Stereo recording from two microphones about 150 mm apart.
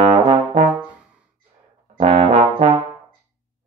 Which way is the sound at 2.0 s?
45° right (ahead or behind).